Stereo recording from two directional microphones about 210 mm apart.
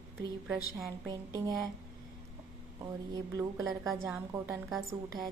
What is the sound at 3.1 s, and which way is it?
A woman's voice, 15° right (ahead or behind).